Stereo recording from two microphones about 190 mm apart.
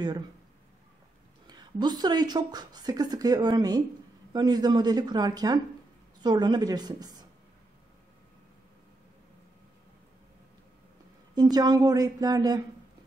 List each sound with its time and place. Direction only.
1.5 s a woman's voice: 20° right (ahead or behind)
11.5 s a woman's voice: 20° right (ahead or behind)